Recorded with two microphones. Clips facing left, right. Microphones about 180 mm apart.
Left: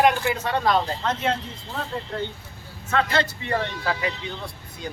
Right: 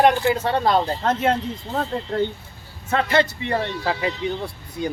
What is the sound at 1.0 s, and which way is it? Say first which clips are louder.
Speech: right 5 dB; 50° right (ahead or behind).